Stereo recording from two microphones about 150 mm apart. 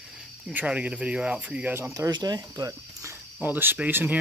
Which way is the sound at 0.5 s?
10° right (ahead or behind).